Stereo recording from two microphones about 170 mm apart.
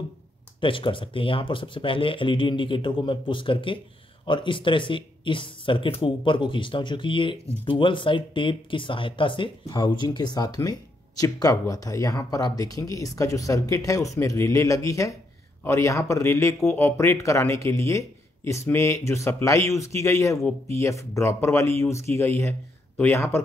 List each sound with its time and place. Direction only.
0.6 s speech: 30° left (ahead or behind); by 23.4 s 15° left (ahead or behind)